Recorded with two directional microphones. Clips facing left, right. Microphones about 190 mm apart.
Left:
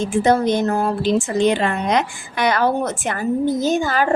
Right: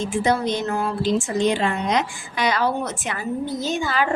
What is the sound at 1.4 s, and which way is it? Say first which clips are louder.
A woman's voice: left 3 dB; 60° left (ahead or behind).